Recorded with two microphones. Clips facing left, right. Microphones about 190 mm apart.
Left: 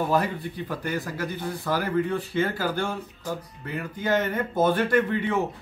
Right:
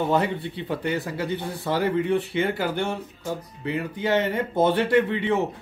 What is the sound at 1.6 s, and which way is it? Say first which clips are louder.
Speech: right 1 dB; 25° right (ahead or behind).